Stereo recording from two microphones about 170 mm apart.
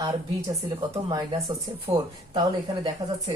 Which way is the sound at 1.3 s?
20° right (ahead or behind).